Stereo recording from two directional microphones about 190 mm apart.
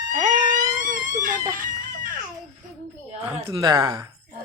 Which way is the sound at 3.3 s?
30° right (ahead or behind).